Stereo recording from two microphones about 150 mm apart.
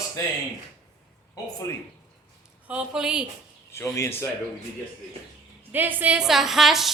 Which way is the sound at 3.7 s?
20° left (ahead or behind).